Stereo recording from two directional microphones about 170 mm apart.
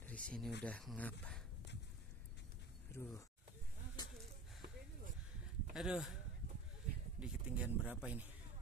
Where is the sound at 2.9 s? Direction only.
15° left (ahead or behind).